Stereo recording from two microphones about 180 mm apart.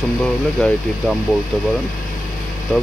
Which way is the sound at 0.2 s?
5° left (ahead or behind).